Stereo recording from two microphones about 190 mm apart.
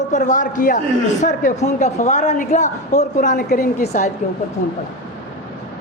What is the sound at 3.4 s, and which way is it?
Speech, 55° left (ahead or behind).